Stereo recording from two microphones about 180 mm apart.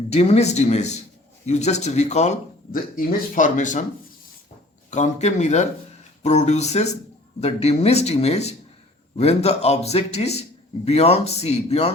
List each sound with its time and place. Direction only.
0.1 s speech: 35° left (ahead or behind)
4.9 s speech: 40° left (ahead or behind)